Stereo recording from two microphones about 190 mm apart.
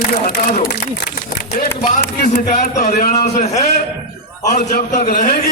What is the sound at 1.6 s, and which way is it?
A man's voice, 50° left (ahead or behind).